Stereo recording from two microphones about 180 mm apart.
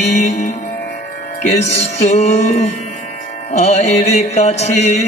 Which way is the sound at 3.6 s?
40° left (ahead or behind).